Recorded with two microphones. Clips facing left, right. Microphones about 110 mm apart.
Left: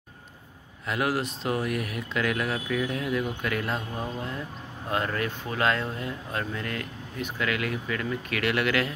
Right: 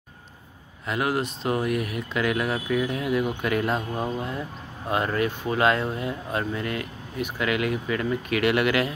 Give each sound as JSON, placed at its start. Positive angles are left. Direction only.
{"t": 0.8, "sound": "speech", "side_deg": 0}
{"t": 3.4, "sound": "speech", "side_deg": -20}